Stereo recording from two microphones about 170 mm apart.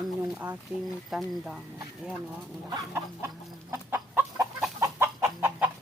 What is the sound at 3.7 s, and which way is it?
Chicken, 15° right (ahead or behind).